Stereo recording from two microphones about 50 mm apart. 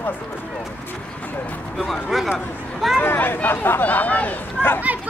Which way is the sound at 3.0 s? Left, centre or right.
Left.